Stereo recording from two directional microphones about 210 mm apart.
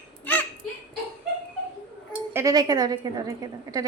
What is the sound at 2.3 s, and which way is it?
A woman's voice, 15° right (ahead or behind).